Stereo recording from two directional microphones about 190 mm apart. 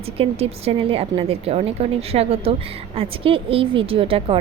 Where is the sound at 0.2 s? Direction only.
30° right (ahead or behind).